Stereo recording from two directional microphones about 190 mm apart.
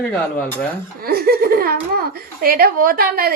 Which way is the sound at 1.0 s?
50° right (ahead or behind).